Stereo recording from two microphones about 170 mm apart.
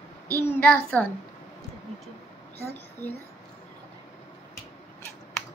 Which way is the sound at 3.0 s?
10° left (ahead or behind).